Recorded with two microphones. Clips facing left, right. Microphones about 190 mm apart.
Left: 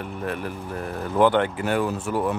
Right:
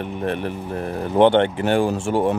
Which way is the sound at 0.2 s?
25° right (ahead or behind).